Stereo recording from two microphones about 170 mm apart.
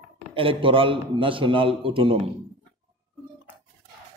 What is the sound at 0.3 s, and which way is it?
A man's voice, 30° right (ahead or behind).